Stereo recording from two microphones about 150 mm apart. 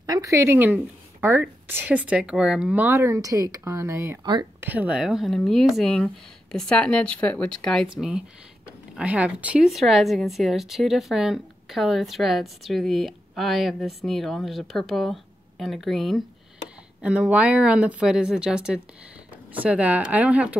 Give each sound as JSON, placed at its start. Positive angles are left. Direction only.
{"t": 0.0, "sound": "speech", "side_deg": -25}
{"t": 4.2, "sound": "speech", "side_deg": -30}
{"t": 4.6, "sound": "speech", "side_deg": -10}